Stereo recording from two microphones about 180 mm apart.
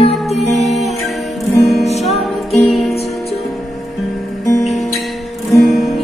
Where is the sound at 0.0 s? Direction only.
35° left (ahead or behind).